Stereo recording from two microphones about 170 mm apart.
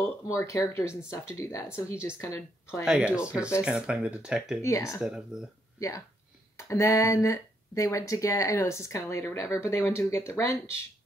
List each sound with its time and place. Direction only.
0.3 s speech: 20° left (ahead or behind)
2.8 s speech: 5° right (ahead or behind)
4.6 s speech: 15° left (ahead or behind)
5.0 s speech: 5° right (ahead or behind)
5.8 s speech: 20° left (ahead or behind)